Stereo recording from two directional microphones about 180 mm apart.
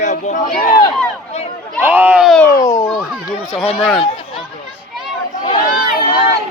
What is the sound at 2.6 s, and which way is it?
Speech, 15° left (ahead or behind).